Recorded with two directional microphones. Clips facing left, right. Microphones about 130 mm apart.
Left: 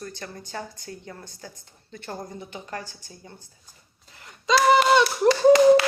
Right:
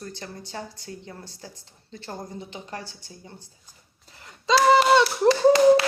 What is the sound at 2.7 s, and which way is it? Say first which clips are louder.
Speech: left 1 dB; 45° left (ahead or behind).